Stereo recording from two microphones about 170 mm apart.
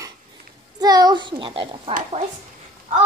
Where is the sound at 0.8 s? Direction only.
25° right (ahead or behind).